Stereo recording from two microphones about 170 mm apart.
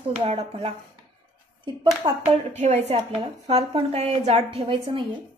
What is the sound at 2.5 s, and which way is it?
A woman's voice, 40° right (ahead or behind).